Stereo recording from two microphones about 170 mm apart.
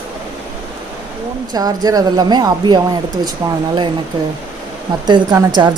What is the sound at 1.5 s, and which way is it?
A woman's voice, 20° right (ahead or behind).